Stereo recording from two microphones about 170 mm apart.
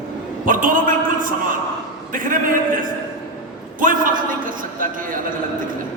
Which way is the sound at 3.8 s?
55° right (ahead or behind).